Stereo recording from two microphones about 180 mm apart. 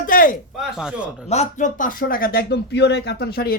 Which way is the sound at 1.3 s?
40° left (ahead or behind).